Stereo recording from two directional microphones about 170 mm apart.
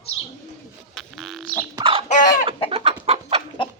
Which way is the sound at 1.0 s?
Centre (ahead or behind).